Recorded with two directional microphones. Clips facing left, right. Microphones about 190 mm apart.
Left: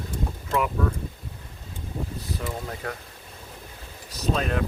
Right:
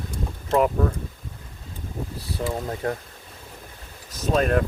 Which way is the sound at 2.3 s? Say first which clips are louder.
Right 7 dB; 30° right (ahead or behind).